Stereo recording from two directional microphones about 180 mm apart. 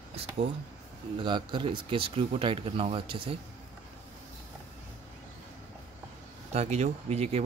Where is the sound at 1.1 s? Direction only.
25° right (ahead or behind).